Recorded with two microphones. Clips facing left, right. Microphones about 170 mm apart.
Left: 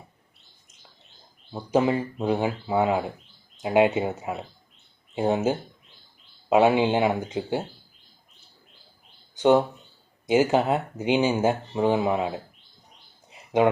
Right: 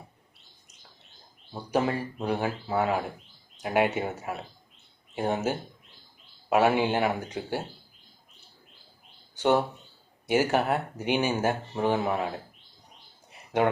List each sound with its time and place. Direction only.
1.5 s speech: 20° left (ahead or behind)
5.1 s speech: 20° left (ahead or behind)
9.3 s speech: 20° left (ahead or behind)